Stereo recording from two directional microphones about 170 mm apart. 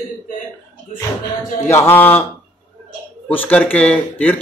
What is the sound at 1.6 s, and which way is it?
Speech, 15° left (ahead or behind).